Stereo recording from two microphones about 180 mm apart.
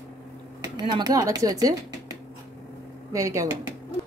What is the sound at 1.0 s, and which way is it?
A woman's voice, 20° right (ahead or behind).